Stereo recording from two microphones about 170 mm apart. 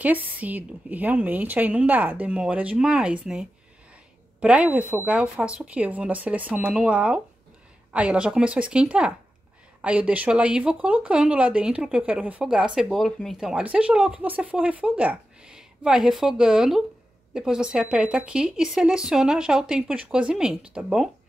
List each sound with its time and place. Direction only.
0.0 s a woman's voice: 10° right (ahead or behind)